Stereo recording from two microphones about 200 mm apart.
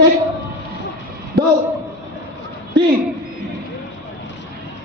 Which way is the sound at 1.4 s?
55° right (ahead or behind).